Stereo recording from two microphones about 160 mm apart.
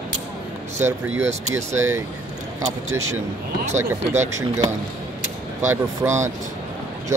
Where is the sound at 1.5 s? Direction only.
15° right (ahead or behind).